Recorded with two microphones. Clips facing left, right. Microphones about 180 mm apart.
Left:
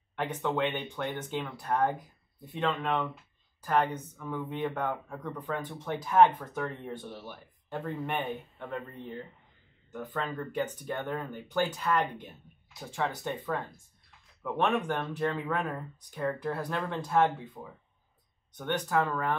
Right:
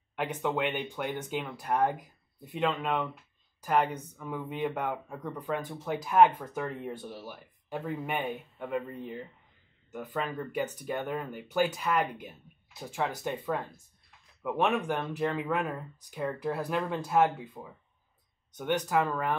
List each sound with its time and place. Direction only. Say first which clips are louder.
0.1 s speech: even; 10° right (ahead or behind)
18.6 s speech: right 1 dB; 10° right (ahead or behind)